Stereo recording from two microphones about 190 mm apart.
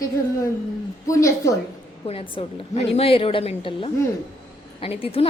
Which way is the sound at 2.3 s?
30° left (ahead or behind).